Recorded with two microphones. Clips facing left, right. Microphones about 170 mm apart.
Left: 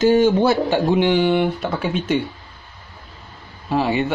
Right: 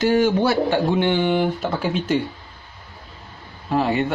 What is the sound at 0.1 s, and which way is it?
Speech, 25° left (ahead or behind).